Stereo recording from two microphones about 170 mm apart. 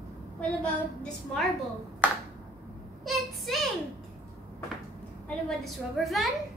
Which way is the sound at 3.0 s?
Centre (ahead or behind).